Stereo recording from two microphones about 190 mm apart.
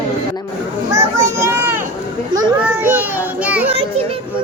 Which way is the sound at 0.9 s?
15° right (ahead or behind).